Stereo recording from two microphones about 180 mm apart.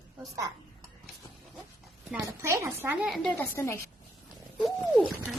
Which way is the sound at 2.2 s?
15° right (ahead or behind).